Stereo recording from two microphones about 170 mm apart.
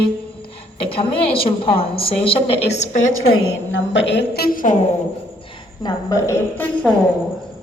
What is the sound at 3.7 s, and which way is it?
A woman's voice, 90° left.